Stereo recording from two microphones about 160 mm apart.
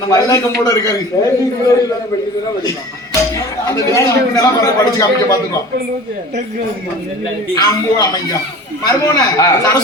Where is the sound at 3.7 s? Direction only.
20° left (ahead or behind).